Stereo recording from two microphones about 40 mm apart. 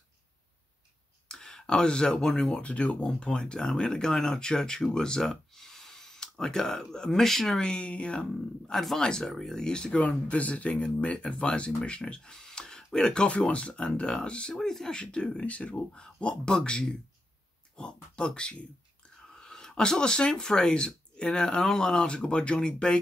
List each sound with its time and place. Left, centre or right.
1.3 s speech: centre
2.5 s speech: left
3.1 s speech: left
5.3 s a sound: centre
7.1 s speech: centre
7.8 s speech: left
8.3 s speech: centre
9.9 s speech: left; by 13.3 s centre
13.3 s speech: left
14.5 s speech: centre
14.9 s speech: left
19.3 s a sound: centre
19.7 s speech: left